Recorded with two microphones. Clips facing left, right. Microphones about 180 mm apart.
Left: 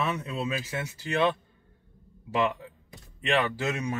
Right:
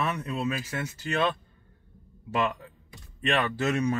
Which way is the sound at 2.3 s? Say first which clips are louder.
Left 1 dB; 20° left (ahead or behind).